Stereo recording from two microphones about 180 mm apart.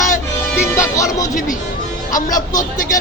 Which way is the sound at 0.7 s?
15° left (ahead or behind).